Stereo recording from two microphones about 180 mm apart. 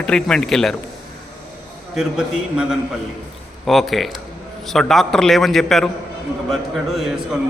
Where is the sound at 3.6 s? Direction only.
Centre (ahead or behind).